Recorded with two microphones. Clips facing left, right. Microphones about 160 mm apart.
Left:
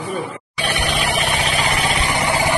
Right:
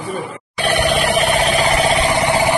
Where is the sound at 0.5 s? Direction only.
50° right (ahead or behind); by 2.5 s 30° right (ahead or behind).